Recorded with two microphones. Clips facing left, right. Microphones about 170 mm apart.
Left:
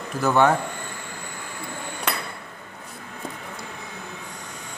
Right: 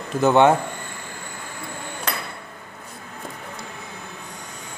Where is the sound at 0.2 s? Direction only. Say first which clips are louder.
Right 4 dB; 20° right (ahead or behind).